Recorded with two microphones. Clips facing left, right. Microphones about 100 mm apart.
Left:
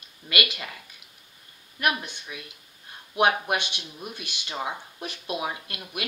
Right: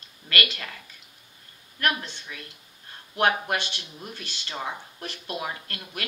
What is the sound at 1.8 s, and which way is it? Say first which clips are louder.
Speech: left 1 dB; 15° left (ahead or behind).